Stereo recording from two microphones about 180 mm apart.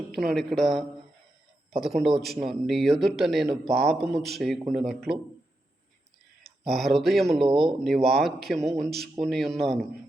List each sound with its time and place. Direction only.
0.1 s speech: centre (ahead or behind)
6.7 s speech: centre (ahead or behind)
7.4 s speech: 25° right (ahead or behind)
7.9 s speech: centre (ahead or behind)